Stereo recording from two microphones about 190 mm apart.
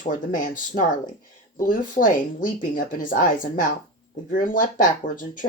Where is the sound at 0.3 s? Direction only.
45° left (ahead or behind).